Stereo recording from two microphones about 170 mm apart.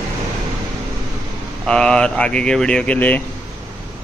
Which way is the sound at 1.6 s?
5° left (ahead or behind).